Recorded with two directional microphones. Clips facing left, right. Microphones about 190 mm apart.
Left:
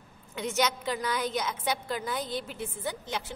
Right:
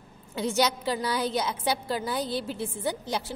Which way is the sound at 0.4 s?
30° right (ahead or behind).